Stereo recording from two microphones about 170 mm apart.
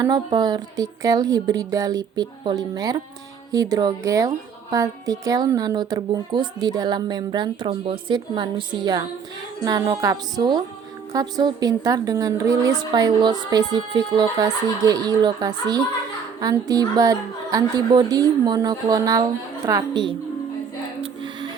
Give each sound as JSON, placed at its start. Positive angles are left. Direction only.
{"t": 0.0, "sound": "a woman's voice", "side_deg": -25}